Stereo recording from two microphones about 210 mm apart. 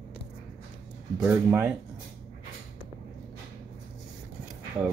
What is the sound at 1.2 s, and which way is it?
Speech, 10° right (ahead or behind).